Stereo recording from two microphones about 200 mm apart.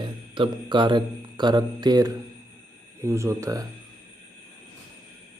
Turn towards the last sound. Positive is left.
turn(degrees=-15)  # may be behind; listen again after turning